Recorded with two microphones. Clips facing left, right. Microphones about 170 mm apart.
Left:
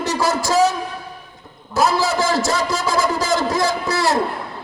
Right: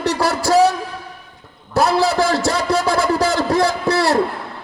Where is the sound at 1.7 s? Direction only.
65° right (ahead or behind).